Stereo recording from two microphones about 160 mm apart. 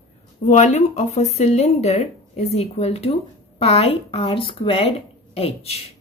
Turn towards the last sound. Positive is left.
turn(degrees=40)  # may be behind; listen again after turning